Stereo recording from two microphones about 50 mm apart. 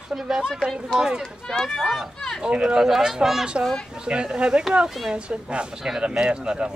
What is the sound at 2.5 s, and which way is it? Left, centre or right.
Speech, centre.